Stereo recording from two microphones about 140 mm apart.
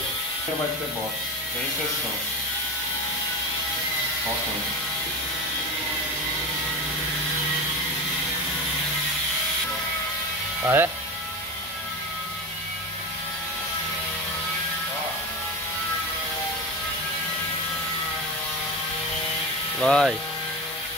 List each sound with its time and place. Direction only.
10.6 s speech: 15° right (ahead or behind)
19.8 s speech: 5° left (ahead or behind)